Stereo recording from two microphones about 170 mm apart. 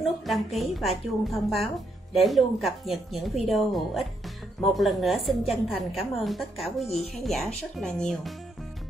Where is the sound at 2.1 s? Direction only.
Centre (ahead or behind).